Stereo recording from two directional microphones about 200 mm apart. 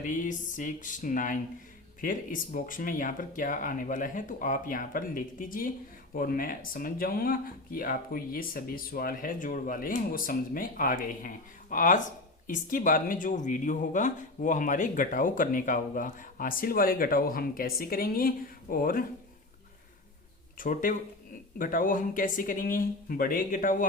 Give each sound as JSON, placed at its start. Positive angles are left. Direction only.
{"t": 0.0, "sound": "speech", "side_deg": 40}
{"t": 20.6, "sound": "speech", "side_deg": 40}